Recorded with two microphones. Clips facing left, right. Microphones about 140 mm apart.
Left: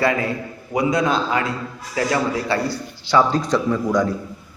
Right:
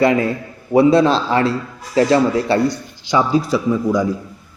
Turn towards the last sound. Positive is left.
turn(degrees=-10)  # may be behind; listen again after turning